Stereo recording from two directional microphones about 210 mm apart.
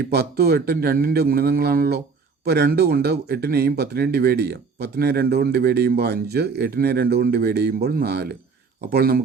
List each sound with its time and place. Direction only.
0.0 s speech: 50° right (ahead or behind)